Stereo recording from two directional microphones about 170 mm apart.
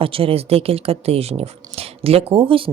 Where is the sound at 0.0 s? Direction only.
35° right (ahead or behind).